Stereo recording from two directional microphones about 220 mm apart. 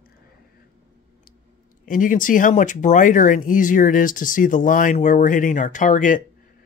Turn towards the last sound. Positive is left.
turn(degrees=35)  # may be behind; listen again after turning